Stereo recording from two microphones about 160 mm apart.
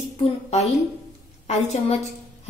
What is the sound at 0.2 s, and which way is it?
A woman's voice, 45° left (ahead or behind).